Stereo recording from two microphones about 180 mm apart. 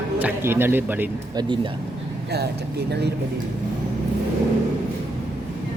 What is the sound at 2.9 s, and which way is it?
Speech, 65° right (ahead or behind).